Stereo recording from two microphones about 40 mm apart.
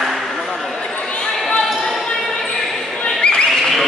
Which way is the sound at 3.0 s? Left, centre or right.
Left.